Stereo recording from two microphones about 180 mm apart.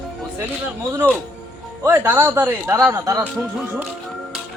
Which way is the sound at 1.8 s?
15° right (ahead or behind).